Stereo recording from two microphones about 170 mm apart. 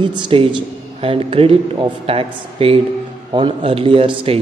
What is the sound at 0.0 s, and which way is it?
A man's voice, 25° right (ahead or behind).